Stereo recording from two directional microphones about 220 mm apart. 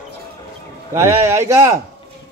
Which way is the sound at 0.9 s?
15° right (ahead or behind).